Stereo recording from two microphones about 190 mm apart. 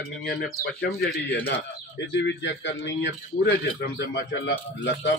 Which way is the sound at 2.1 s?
70° left (ahead or behind).